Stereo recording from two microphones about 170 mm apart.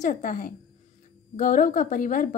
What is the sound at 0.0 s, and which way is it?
A woman's voice, 45° left (ahead or behind).